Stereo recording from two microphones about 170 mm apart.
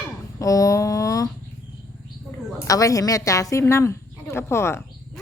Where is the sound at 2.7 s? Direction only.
20° left (ahead or behind).